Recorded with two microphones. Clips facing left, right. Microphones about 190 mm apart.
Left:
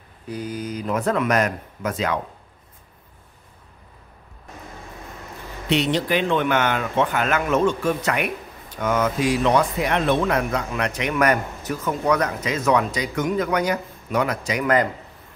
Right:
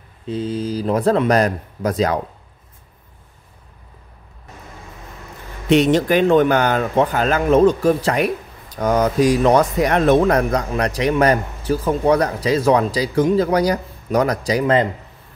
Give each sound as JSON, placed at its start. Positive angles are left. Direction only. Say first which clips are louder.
{"t": 0.3, "sound": "speech", "louder": "right 6 dB", "side_deg": -25}
{"t": 5.7, "sound": "speech", "louder": "right 7 dB", "side_deg": -45}